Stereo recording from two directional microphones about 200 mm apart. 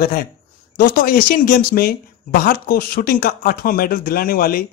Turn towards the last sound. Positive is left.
turn(degrees=45)  # may be behind; listen again after turning